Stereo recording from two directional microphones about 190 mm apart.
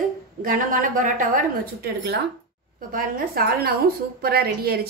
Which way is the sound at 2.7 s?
45° right (ahead or behind).